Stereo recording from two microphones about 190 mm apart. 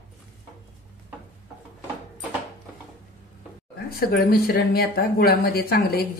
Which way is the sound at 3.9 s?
55° left (ahead or behind).